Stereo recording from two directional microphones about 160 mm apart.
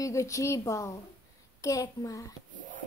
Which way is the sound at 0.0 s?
20° left (ahead or behind).